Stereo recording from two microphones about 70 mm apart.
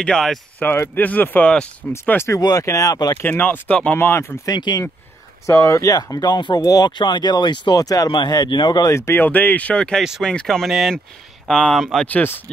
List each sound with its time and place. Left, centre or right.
0.0 s speech: centre
0.6 s speech: left
2.6 s speech: left
3.2 s speech: left
4.0 s speech: left
4.5 s speech: left
5.5 s speech: left
9.1 s speech: left; by 12.1 s centre
12.1 s speech: left